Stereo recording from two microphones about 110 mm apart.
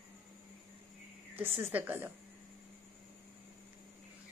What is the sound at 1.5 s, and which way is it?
Speech, 20° right (ahead or behind).